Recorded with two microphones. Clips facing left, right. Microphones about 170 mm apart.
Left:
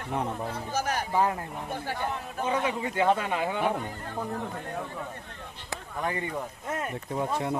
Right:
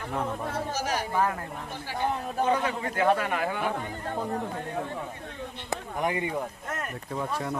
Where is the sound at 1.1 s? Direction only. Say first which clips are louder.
Left 2 dB; 20° left (ahead or behind).